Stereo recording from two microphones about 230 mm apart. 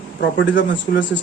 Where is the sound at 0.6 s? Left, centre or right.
Left.